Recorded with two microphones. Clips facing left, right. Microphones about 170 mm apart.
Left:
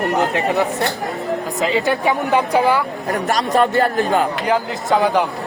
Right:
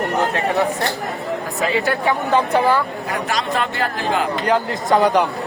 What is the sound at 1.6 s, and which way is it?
A woman's voice, 20° left (ahead or behind).